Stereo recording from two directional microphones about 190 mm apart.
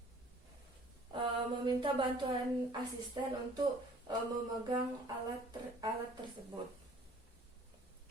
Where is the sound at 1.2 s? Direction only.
25° right (ahead or behind).